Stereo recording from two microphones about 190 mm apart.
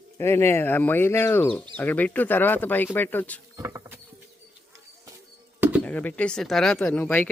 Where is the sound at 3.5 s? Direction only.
15° right (ahead or behind).